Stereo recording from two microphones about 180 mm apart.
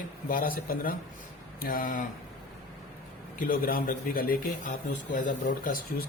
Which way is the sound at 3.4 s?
50° left (ahead or behind).